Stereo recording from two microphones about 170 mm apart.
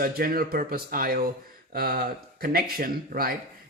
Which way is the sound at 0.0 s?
60° right (ahead or behind).